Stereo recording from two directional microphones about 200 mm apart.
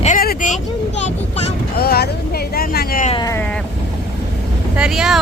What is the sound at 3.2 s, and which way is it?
Speech, 15° left (ahead or behind).